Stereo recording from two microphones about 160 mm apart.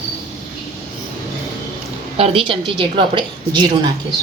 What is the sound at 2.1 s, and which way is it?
A woman's voice, 35° right (ahead or behind).